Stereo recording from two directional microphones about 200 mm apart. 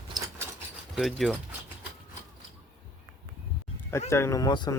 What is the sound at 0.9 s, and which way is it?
Speech, centre (ahead or behind).